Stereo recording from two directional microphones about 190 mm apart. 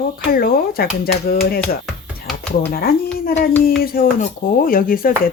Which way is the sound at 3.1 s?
50° left (ahead or behind).